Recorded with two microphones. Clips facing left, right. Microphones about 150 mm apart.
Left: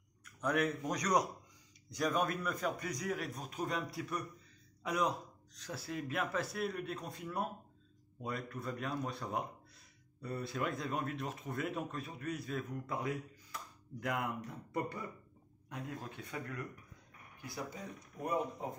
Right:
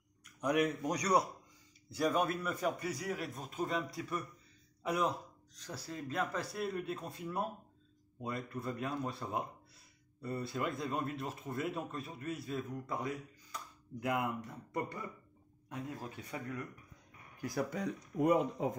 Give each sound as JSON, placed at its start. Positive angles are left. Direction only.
{"t": 0.4, "sound": "speech", "side_deg": -10}
{"t": 13.5, "sound": "a sound", "side_deg": -5}
{"t": 14.4, "sound": "speech", "side_deg": 0}
{"t": 17.4, "sound": "speech", "side_deg": -50}